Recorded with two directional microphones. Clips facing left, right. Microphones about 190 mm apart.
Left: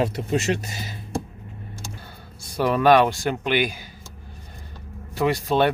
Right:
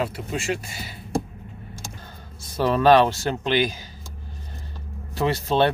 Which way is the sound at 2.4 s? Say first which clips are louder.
Even; 15° left (ahead or behind).